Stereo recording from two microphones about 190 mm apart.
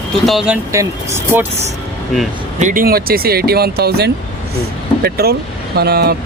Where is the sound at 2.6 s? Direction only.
45° right (ahead or behind).